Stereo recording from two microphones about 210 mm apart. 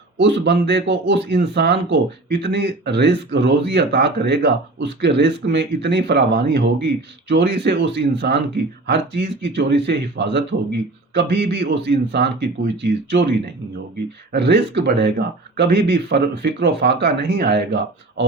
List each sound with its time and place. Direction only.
0.2 s speech: 55° right (ahead or behind)